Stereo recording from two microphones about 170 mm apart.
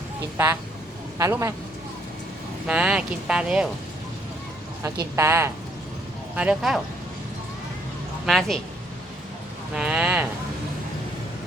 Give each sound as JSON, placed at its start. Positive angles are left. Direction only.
{"t": 0.3, "sound": "speech", "side_deg": -15}
{"t": 2.6, "sound": "speech", "side_deg": -5}
{"t": 5.1, "sound": "speech", "side_deg": -15}
{"t": 8.3, "sound": "speech", "side_deg": 0}
{"t": 9.7, "sound": "speech", "side_deg": -5}